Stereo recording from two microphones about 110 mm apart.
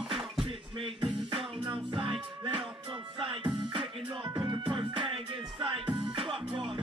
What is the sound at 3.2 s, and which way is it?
Music, 55° right (ahead or behind).